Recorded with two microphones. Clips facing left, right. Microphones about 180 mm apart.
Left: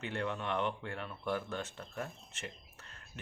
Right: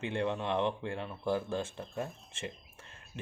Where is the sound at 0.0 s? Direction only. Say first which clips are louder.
Right 4 dB; 25° right (ahead or behind).